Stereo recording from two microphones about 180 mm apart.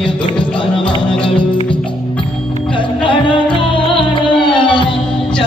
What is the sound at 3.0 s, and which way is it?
Music, 30° left (ahead or behind).